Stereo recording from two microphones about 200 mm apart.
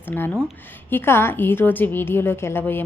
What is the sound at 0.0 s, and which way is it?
A woman's voice, 10° left (ahead or behind).